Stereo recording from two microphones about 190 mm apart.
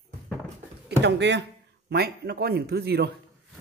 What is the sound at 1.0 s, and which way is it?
Speech, 65° right (ahead or behind).